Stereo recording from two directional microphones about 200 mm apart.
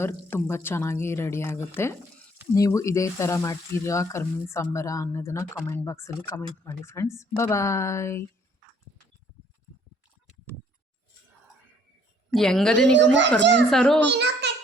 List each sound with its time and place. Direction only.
0.0 s speech: 10° left (ahead or behind)
12.3 s a woman's voice: centre (ahead or behind)
14.0 s a child's voice: 60° right (ahead or behind)